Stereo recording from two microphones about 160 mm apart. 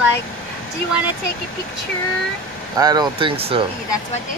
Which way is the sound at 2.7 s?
25° right (ahead or behind).